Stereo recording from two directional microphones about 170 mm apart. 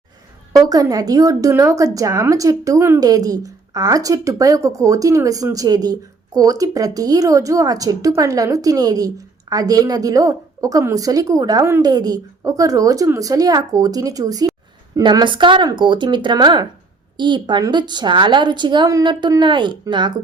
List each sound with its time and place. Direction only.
0.5 s speech: 20° right (ahead or behind)